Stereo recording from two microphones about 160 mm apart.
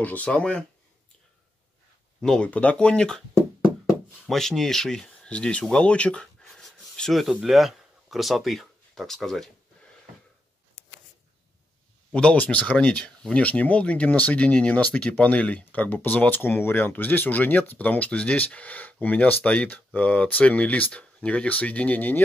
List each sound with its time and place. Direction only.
0.0 s speech: 10° left (ahead or behind)
2.2 s speech: 5° left (ahead or behind)
4.3 s speech: centre (ahead or behind)
9.8 s wheeze: 5° left (ahead or behind)
12.1 s speech: 5° left (ahead or behind)